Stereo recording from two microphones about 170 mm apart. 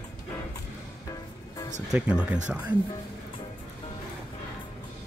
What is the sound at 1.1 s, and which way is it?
Music, 25° left (ahead or behind).